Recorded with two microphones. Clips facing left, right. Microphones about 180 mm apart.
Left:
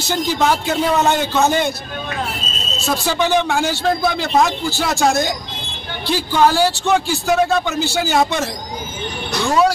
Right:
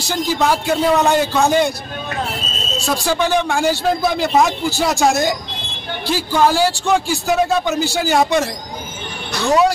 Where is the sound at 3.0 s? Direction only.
Centre (ahead or behind).